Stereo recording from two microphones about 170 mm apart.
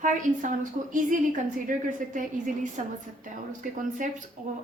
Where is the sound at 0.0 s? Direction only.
50° right (ahead or behind).